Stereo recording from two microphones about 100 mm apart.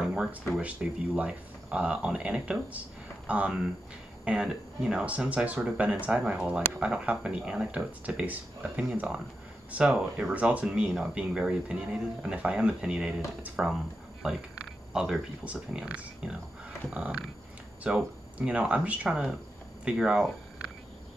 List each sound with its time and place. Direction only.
0.0 s a sound: 10° right (ahead or behind)
0.6 s speech: 15° right (ahead or behind)
14.9 s speech: 5° right (ahead or behind)